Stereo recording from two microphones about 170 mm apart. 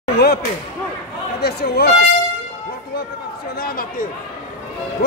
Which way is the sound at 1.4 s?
65° left (ahead or behind).